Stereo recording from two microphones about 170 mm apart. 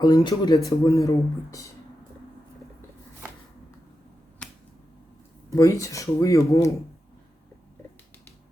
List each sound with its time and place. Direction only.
0.0 s speech: 25° left (ahead or behind)
4.4 s finger snapping: 5° left (ahead or behind)
5.5 s speech: 20° left (ahead or behind)